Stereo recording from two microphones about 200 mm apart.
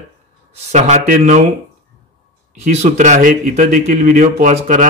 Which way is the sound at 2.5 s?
35° right (ahead or behind).